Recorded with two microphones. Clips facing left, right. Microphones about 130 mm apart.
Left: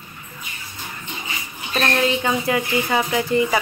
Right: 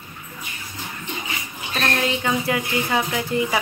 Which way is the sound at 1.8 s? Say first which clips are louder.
Left 3 dB; centre (ahead or behind).